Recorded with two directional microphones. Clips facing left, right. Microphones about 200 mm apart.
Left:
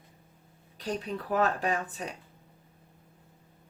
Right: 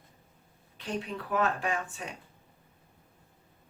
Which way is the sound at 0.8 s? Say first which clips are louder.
Left 2 dB; 40° left (ahead or behind).